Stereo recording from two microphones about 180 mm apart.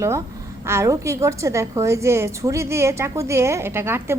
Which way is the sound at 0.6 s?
15° right (ahead or behind).